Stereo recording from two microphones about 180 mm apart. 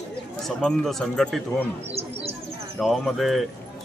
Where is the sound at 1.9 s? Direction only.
35° right (ahead or behind).